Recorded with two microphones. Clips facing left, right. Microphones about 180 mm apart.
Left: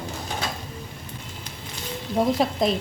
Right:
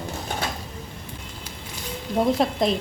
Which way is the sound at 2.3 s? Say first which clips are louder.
Even; centre (ahead or behind).